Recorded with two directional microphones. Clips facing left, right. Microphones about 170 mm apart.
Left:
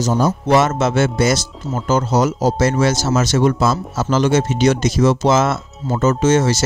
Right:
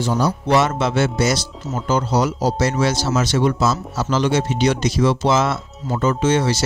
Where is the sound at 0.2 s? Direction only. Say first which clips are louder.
Left 2 dB; 50° left (ahead or behind).